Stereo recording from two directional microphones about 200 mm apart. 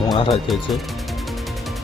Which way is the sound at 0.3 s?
Centre (ahead or behind).